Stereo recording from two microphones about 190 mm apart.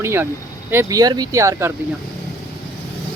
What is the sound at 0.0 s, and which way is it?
Speech, 10° right (ahead or behind).